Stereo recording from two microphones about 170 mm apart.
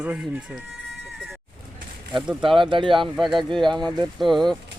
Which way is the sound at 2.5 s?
30° right (ahead or behind).